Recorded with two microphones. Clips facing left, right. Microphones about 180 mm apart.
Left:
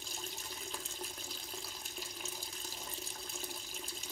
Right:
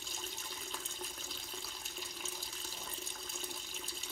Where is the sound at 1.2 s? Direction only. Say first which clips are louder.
Left 1 dB; 5° left (ahead or behind).